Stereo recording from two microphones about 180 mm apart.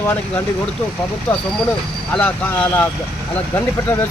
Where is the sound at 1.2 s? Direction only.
10° left (ahead or behind).